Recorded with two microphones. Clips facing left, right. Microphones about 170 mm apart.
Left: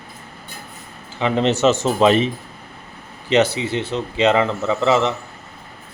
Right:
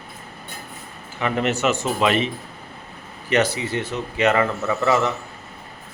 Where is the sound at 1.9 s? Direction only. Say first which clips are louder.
Left 5 dB; 30° left (ahead or behind).